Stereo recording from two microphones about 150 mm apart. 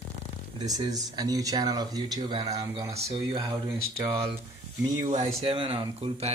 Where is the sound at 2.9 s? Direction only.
45° right (ahead or behind).